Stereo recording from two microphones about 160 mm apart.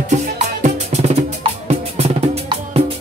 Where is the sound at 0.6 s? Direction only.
45° right (ahead or behind).